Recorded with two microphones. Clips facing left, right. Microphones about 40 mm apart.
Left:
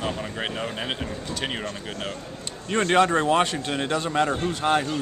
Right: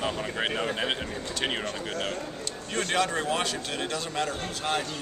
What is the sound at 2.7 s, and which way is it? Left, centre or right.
A man's voice, left.